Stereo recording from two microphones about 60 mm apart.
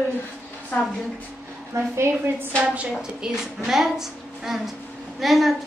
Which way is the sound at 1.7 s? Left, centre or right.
Right.